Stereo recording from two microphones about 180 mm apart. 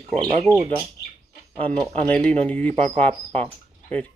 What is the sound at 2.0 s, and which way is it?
Speech, 5° left (ahead or behind).